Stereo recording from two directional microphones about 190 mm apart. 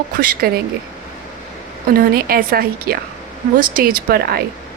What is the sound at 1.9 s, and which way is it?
A woman's voice, 50° right (ahead or behind).